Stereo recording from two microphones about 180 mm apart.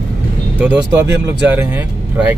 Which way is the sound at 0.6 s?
10° right (ahead or behind).